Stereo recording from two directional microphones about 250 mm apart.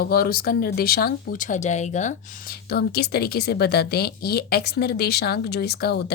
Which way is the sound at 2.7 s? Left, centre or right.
Left.